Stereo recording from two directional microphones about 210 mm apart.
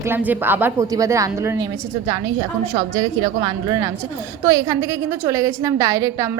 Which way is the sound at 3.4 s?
15° right (ahead or behind).